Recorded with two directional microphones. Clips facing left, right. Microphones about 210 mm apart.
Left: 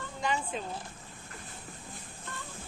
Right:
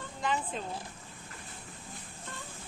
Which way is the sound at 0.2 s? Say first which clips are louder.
Even; centre (ahead or behind).